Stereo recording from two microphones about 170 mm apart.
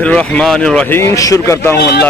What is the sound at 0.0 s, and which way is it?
A man's voice, 5° left (ahead or behind).